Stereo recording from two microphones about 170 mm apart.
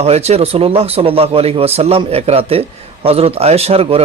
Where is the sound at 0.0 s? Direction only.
40° right (ahead or behind).